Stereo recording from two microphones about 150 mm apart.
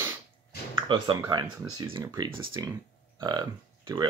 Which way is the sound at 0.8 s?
35° right (ahead or behind).